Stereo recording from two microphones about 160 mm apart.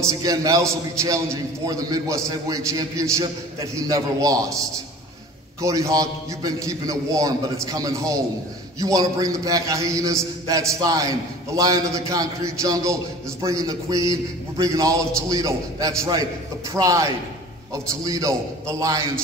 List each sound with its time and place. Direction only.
0.0 s a man's voice: 25° right (ahead or behind)
5.6 s a man's voice: 20° right (ahead or behind)